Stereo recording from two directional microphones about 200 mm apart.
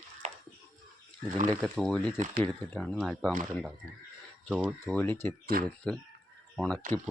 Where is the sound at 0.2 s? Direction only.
35° right (ahead or behind).